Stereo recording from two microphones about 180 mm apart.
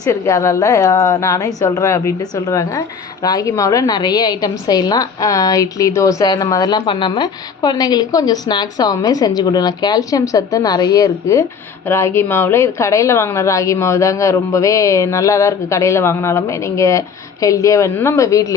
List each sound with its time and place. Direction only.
0.0 s a woman's voice: 15° left (ahead or behind)